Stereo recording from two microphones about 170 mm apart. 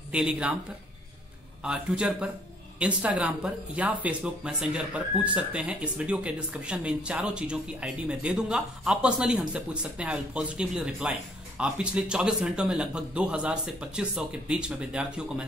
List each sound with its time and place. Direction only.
0.1 s speech: 5° right (ahead or behind)
1.6 s a man's voice: 5° right (ahead or behind)